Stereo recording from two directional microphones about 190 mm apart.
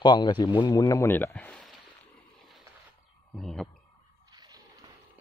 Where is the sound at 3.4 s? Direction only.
Centre (ahead or behind).